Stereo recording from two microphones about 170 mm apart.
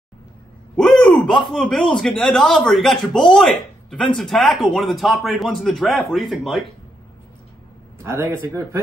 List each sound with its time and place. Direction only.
0.7 s speech: centre (ahead or behind)
8.0 s speech: 15° right (ahead or behind)